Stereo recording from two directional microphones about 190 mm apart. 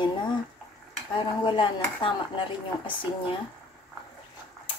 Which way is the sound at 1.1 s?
25° left (ahead or behind).